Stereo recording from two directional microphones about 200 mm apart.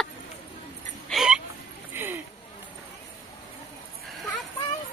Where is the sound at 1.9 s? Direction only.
10° right (ahead or behind).